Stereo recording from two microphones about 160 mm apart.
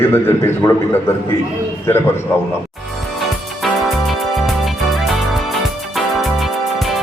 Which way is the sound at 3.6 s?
Centre (ahead or behind).